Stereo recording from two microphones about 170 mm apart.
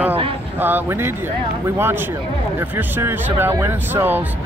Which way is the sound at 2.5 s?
15° right (ahead or behind).